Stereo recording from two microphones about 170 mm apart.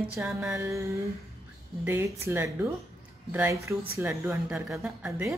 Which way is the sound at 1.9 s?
15° right (ahead or behind).